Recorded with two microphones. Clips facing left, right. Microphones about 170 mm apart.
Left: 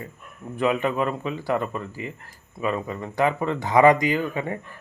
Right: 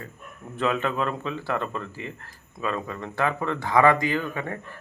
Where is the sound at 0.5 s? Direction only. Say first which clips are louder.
Left 3 dB; 15° left (ahead or behind).